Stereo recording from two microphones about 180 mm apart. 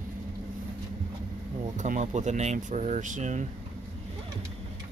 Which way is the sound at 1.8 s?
40° right (ahead or behind).